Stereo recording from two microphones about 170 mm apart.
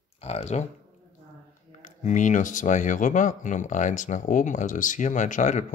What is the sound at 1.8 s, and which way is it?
Speech, 45° left (ahead or behind).